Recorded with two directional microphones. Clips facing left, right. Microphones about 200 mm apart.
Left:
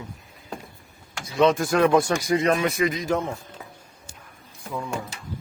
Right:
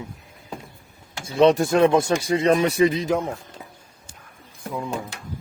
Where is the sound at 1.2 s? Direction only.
30° right (ahead or behind).